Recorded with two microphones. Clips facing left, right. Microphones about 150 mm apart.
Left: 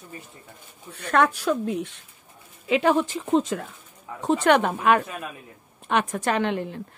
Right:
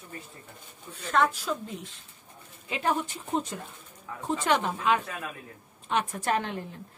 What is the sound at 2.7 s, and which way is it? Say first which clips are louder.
Speech: left 8 dB; 90° left.